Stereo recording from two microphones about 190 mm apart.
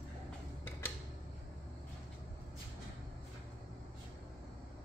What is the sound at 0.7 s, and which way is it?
Tick-tock, 15° left (ahead or behind).